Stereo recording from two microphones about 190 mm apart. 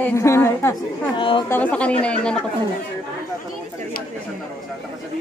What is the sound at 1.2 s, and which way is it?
Speech, 25° left (ahead or behind).